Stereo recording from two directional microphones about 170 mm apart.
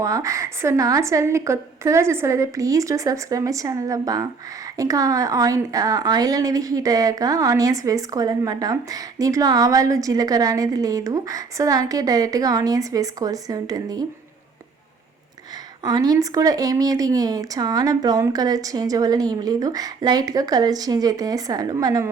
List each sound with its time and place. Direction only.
0.0 s a woman's voice: 20° right (ahead or behind)
15.8 s a woman's voice: 25° right (ahead or behind)